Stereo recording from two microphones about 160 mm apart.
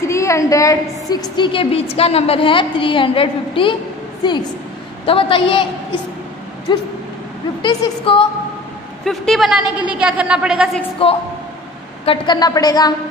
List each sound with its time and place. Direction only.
0.0 s a woman's voice: 20° left (ahead or behind)
5.0 s a woman's voice: 35° left (ahead or behind)
7.6 s a woman's voice: 35° left (ahead or behind)
9.0 s a woman's voice: centre (ahead or behind)
11.0 s a woman's voice: 35° left (ahead or behind)